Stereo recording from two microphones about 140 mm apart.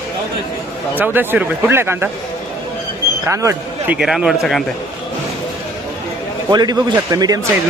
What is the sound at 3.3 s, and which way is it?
Speech, 20° right (ahead or behind).